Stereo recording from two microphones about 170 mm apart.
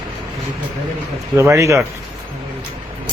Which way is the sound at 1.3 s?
15° right (ahead or behind).